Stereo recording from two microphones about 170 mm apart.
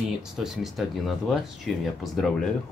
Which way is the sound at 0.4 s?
Centre (ahead or behind).